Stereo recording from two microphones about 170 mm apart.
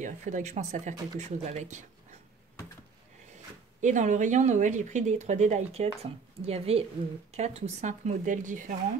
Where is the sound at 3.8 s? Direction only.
45° right (ahead or behind).